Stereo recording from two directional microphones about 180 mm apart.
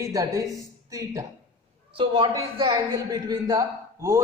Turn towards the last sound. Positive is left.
turn(degrees=-15)  # may be behind; listen again after turning